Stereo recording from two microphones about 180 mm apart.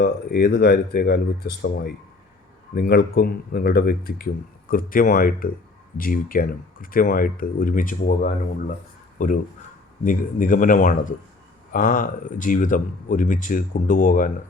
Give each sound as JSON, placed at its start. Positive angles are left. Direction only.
{"t": 0.0, "sound": "speech", "side_deg": 60}